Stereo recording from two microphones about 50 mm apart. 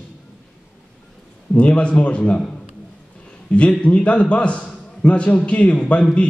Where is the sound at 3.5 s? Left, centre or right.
Left.